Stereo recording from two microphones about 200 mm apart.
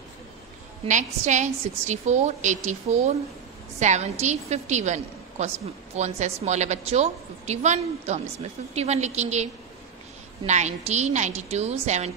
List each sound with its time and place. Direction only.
0.8 s a woman's voice: 40° right (ahead or behind)